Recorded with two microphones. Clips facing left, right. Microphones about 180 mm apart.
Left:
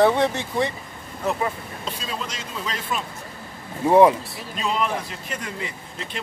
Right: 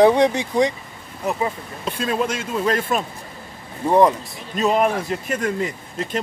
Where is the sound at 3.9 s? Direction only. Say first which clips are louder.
Left 1 dB; 5° left (ahead or behind).